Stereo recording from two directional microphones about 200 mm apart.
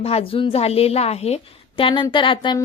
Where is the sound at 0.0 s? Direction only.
30° left (ahead or behind).